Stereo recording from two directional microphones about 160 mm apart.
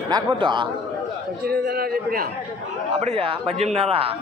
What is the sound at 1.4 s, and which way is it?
Speech, 75° right (ahead or behind).